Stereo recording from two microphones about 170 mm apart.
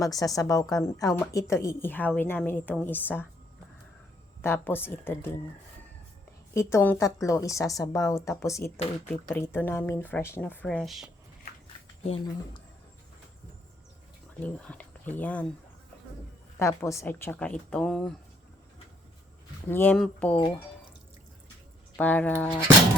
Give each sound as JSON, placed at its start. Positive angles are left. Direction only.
{"t": 0.0, "sound": "a woman's voice", "side_deg": 20}
{"t": 4.4, "sound": "a woman's voice", "side_deg": 10}
{"t": 6.5, "sound": "a woman's voice", "side_deg": 15}
{"t": 12.0, "sound": "speech", "side_deg": 35}
{"t": 14.4, "sound": "a woman's voice", "side_deg": 10}
{"t": 16.6, "sound": "a woman's voice", "side_deg": 15}
{"t": 19.6, "sound": "a woman's voice", "side_deg": 10}
{"t": 21.9, "sound": "a woman's voice", "side_deg": 10}